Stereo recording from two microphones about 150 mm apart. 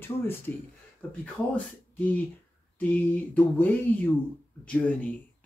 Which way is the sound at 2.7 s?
10° left (ahead or behind).